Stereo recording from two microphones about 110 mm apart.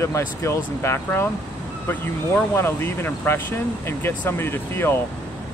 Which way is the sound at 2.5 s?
20° left (ahead or behind).